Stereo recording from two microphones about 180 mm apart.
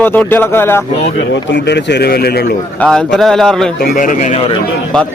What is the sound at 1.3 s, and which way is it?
Speech, 80° left.